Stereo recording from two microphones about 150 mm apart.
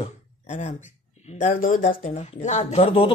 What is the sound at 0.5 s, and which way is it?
Speech, 55° left (ahead or behind).